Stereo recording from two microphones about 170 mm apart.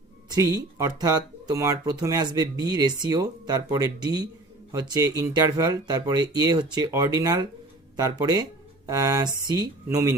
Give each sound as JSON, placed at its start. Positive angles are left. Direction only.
{"t": 0.3, "sound": "speech", "side_deg": -20}